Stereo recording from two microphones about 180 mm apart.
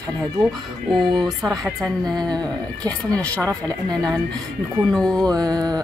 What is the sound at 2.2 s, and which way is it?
A woman's voice, 20° right (ahead or behind).